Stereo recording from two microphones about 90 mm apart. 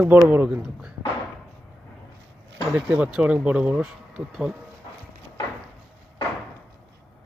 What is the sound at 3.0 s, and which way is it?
Speech, 10° right (ahead or behind).